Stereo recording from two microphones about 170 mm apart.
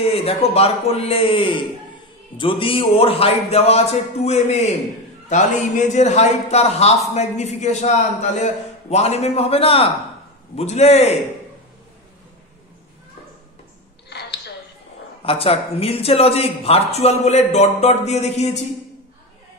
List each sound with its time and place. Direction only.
0.0 s speech: 35° left (ahead or behind)
14.0 s a sound: 80° left
15.2 s speech: 35° left (ahead or behind)